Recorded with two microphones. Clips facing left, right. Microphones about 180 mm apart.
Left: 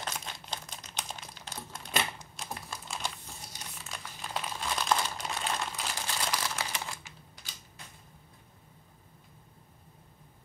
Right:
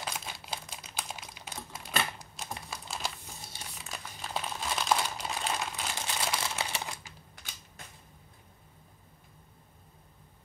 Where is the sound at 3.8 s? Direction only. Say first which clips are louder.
Right 1 dB; centre (ahead or behind).